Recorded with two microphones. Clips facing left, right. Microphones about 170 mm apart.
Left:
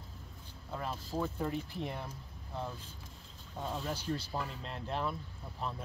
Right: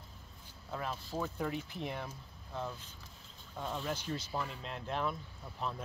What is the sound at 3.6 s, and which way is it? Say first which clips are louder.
Speech: left 1 dB; 5° left (ahead or behind).